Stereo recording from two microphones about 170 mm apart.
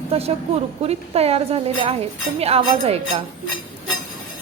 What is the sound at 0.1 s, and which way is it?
A woman's voice, 35° right (ahead or behind).